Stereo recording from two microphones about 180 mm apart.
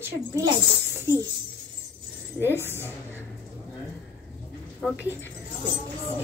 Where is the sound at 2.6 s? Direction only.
15° left (ahead or behind).